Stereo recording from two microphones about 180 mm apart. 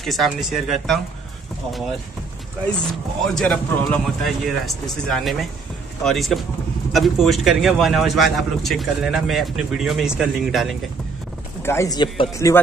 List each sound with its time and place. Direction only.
0.0 s a man's voice: centre (ahead or behind)
3.3 s a man's voice: 5° left (ahead or behind)
11.6 s speech: 15° left (ahead or behind)